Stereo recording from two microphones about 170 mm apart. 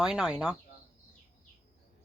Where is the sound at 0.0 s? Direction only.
5° right (ahead or behind).